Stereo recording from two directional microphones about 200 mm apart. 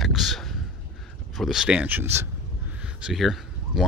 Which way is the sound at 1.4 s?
Centre (ahead or behind).